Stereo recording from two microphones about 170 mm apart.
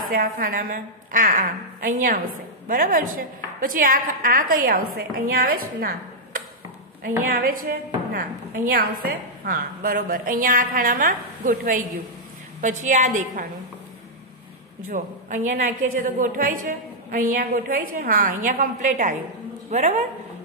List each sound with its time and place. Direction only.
0.0 s a woman's voice: 55° right (ahead or behind)
14.9 s a woman's voice: 50° right (ahead or behind)